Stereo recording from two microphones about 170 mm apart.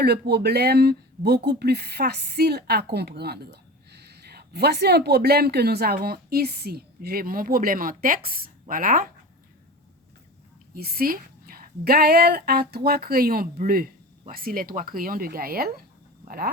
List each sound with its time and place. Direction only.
0.0 s speech: 70° right (ahead or behind); by 9.0 s 55° right (ahead or behind)
10.8 s a woman's voice: 60° right (ahead or behind)